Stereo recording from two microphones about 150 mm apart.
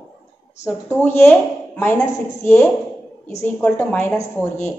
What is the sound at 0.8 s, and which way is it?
Speech, 15° left (ahead or behind).